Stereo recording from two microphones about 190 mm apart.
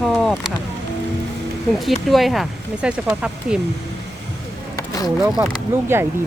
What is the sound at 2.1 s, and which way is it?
Speech, centre (ahead or behind).